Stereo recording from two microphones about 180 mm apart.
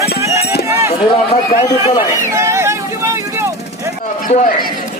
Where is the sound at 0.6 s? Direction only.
15° right (ahead or behind).